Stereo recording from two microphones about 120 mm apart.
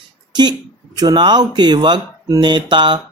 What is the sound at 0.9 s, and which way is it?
Speech, 35° right (ahead or behind).